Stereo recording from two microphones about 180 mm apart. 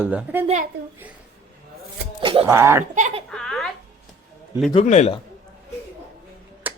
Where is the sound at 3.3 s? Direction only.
5° left (ahead or behind).